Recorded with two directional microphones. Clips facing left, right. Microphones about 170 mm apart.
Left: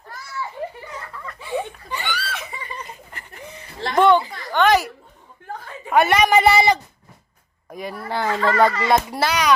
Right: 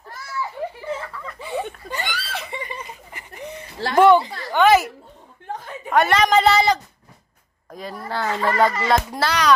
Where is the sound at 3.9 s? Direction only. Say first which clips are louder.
Right 2 dB; 5° right (ahead or behind).